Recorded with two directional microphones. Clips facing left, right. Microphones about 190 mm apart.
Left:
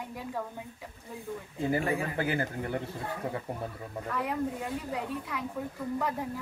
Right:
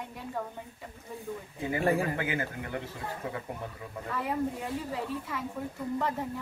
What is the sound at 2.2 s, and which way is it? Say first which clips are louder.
Speech: left 2 dB; 35° left (ahead or behind).